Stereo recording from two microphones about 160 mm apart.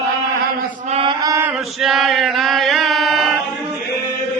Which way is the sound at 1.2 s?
20° right (ahead or behind).